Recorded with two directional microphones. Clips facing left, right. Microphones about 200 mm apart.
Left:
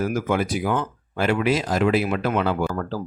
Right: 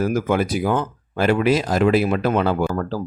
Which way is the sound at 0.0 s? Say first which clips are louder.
Right 3 dB; 35° right (ahead or behind).